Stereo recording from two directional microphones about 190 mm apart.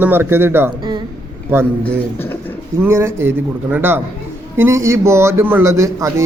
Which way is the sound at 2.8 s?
10° right (ahead or behind).